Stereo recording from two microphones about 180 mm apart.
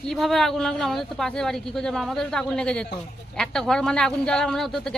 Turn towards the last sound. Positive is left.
turn(degrees=5)  # may be behind; listen again after turning